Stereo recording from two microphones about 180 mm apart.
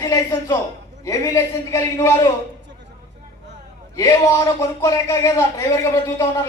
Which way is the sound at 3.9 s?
15° left (ahead or behind).